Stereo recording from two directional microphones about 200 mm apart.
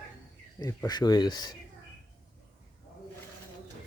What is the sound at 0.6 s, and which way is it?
Speech, 20° left (ahead or behind).